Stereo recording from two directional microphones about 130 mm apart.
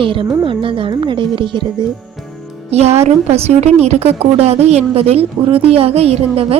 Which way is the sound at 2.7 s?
55° right (ahead or behind).